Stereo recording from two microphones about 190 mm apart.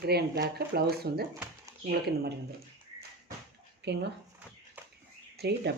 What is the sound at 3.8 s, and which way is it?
Speech, 65° right (ahead or behind).